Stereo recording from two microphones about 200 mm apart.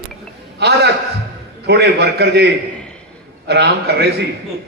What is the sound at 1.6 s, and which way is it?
A man's voice, 55° right (ahead or behind).